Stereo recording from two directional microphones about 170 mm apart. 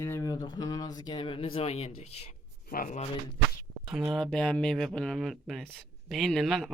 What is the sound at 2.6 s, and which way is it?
Speech, 55° left (ahead or behind).